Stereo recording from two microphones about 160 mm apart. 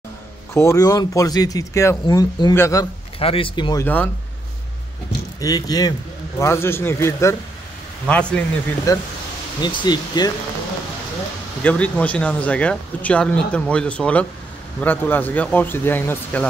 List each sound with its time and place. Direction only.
0.6 s speech: 20° left (ahead or behind)
3.2 s speech: 35° left (ahead or behind)
3.8 s speech: 10° left (ahead or behind)
5.4 s speech: 25° left (ahead or behind); by 8.5 s 5° left (ahead or behind)
8.9 s speech: 20° left (ahead or behind)
11.6 s speech: 10° left (ahead or behind)